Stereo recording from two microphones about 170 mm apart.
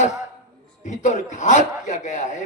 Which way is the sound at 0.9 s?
45° left (ahead or behind).